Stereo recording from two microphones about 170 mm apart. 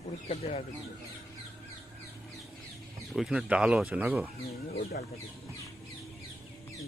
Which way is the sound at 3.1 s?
Centre (ahead or behind).